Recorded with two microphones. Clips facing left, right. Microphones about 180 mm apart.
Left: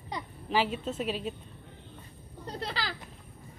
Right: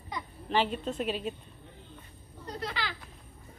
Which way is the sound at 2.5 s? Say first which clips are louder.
Left 1 dB; 35° left (ahead or behind).